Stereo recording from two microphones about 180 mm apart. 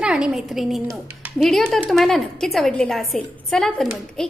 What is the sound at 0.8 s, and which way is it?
Speech, 20° right (ahead or behind).